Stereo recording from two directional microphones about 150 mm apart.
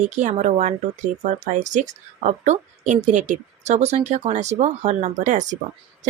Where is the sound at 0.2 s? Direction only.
50° right (ahead or behind).